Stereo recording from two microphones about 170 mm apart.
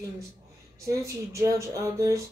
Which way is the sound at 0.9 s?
20° right (ahead or behind).